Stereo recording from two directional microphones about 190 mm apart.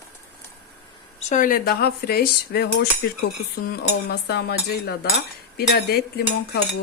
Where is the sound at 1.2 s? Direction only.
40° left (ahead or behind); by 2.9 s 55° left (ahead or behind).